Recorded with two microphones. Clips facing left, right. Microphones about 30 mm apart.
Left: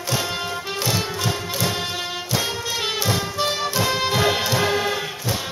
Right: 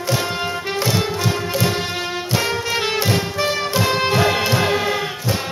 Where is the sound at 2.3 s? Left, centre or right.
Right.